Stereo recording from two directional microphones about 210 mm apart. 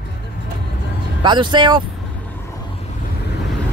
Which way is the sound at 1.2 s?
20° right (ahead or behind).